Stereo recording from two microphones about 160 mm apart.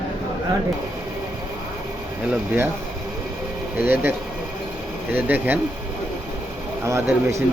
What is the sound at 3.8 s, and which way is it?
Speech, 15° right (ahead or behind).